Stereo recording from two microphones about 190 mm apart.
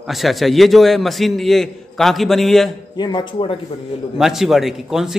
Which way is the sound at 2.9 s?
25° left (ahead or behind).